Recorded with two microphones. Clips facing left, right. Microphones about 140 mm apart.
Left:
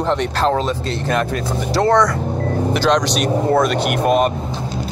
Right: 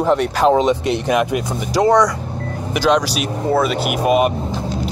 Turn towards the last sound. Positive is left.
turn(degrees=-5)  # may be behind; listen again after turning